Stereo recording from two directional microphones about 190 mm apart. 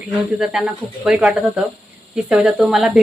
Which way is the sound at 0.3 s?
5° right (ahead or behind).